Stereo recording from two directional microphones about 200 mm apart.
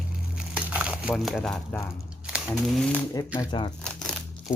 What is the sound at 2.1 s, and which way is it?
Crumpling, 5° right (ahead or behind).